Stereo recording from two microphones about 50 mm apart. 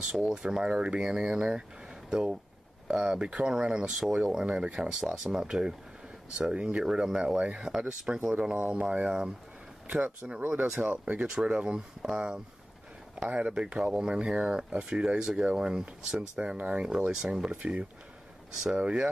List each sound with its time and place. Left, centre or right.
0.0 s speech: centre
8.6 s speech: right
10.8 s speech: right
11.2 s speech: centre
17.1 s speech: centre